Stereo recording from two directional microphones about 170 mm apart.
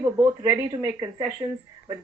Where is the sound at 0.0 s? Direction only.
15° right (ahead or behind).